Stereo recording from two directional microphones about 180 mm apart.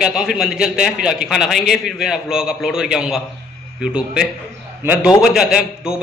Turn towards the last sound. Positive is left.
turn(degrees=-5)  # may be behind; listen again after turning